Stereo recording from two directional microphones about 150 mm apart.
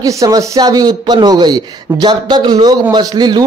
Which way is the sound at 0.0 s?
20° right (ahead or behind).